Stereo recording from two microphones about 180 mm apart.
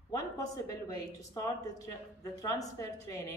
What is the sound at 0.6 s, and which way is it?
Speech, 20° left (ahead or behind).